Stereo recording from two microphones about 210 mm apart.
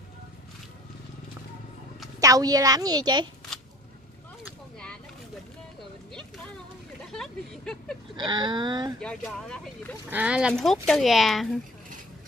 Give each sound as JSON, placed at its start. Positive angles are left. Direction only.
{"t": 2.1, "sound": "a woman's voice", "side_deg": -15}
{"t": 4.5, "sound": "a sound", "side_deg": 5}
{"t": 7.1, "sound": "vehicle", "side_deg": 0}
{"t": 8.2, "sound": "speech", "side_deg": -20}
{"t": 9.0, "sound": "speech", "side_deg": 5}
{"t": 10.0, "sound": "speech", "side_deg": -5}